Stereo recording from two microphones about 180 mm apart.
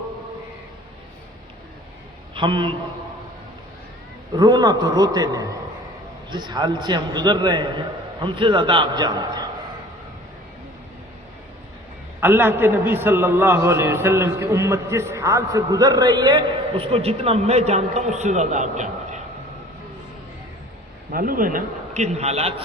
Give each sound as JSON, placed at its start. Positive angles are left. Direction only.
{"t": 2.3, "sound": "a man's voice", "side_deg": -30}
{"t": 4.4, "sound": "a man's voice", "side_deg": -20}
{"t": 12.2, "sound": "a man's voice", "side_deg": -10}
{"t": 21.1, "sound": "a man's voice", "side_deg": -50}